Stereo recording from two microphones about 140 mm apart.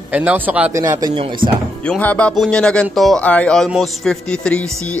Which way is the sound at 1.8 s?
10° left (ahead or behind).